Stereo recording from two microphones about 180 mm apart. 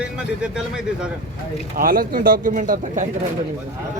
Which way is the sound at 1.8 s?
50° right (ahead or behind).